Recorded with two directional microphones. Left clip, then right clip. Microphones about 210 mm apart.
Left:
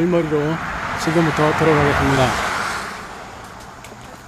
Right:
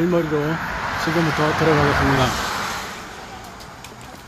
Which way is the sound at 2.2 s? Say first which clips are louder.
Left 3 dB; 45° left (ahead or behind).